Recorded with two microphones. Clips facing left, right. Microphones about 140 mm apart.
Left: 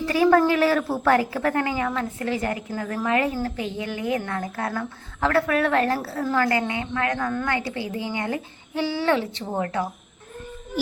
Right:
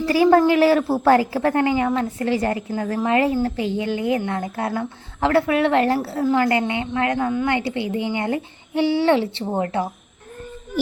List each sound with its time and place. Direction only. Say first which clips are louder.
0.0 s a woman's voice: right 3 dB; 30° right (ahead or behind)